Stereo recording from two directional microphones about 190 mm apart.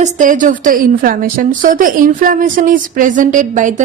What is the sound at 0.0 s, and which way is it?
A woman's voice, 40° right (ahead or behind).